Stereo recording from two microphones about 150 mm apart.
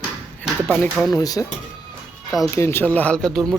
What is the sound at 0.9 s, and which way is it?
Speech, centre (ahead or behind).